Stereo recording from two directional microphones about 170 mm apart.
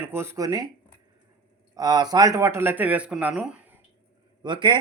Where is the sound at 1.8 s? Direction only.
25° right (ahead or behind).